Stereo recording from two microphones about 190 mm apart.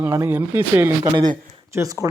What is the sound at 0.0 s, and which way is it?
Speech, 10° right (ahead or behind).